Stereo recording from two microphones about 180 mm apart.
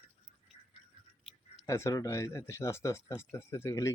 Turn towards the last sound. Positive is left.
turn(degrees=15)  # may be behind; listen again after turning